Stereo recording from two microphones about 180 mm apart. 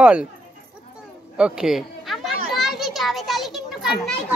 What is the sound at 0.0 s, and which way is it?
Speech, 5° right (ahead or behind).